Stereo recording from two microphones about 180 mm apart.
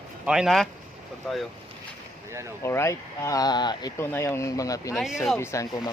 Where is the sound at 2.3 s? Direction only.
15° right (ahead or behind).